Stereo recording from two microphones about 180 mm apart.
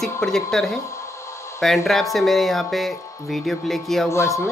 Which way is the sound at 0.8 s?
15° left (ahead or behind).